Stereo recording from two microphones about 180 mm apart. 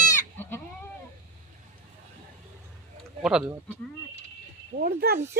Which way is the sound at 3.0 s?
5° right (ahead or behind).